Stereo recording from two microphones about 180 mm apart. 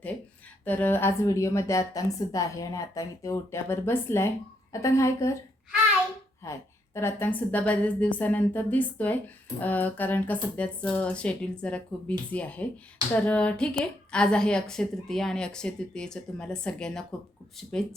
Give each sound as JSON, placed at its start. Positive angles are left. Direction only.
{"t": 0.6, "sound": "a woman's voice", "side_deg": 10}
{"t": 6.4, "sound": "a woman's voice", "side_deg": 15}